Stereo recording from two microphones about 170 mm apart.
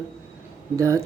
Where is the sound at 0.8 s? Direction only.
20° right (ahead or behind).